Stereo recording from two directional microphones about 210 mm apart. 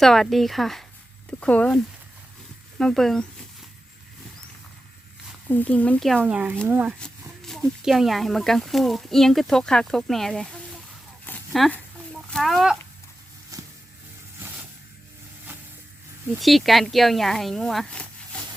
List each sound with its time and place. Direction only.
0.0 s speech: centre (ahead or behind)
5.5 s speech: 5° left (ahead or behind)
11.3 s a sound: 5° left (ahead or behind)
12.3 s speech: centre (ahead or behind)
13.5 s a sound: 15° right (ahead or behind)
14.3 s vehicle: 10° right (ahead or behind)
16.4 s speech: centre (ahead or behind)